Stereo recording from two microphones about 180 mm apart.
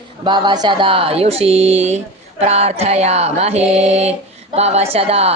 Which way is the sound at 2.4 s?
35° right (ahead or behind).